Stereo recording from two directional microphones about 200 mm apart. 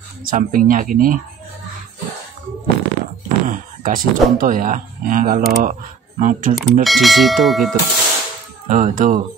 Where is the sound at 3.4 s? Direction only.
45° right (ahead or behind).